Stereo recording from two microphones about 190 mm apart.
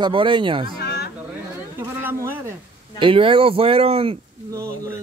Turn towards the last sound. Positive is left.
turn(degrees=-30)  # may be behind; listen again after turning